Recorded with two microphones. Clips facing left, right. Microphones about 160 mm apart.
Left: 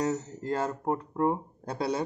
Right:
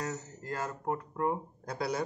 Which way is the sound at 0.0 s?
25° left (ahead or behind).